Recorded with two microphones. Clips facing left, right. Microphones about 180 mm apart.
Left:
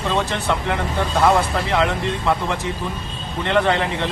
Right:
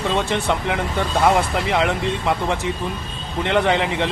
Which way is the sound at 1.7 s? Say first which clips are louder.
Even; 15° right (ahead or behind).